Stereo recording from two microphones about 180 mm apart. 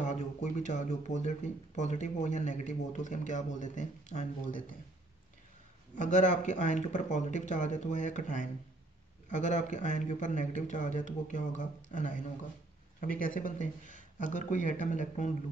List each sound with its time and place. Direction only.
0.0 s speech: 40° left (ahead or behind)
5.9 s speech: 40° left (ahead or behind)